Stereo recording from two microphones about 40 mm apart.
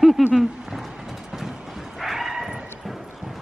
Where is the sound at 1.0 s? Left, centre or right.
Centre.